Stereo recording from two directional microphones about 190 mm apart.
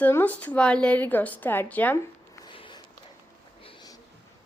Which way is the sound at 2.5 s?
25° left (ahead or behind).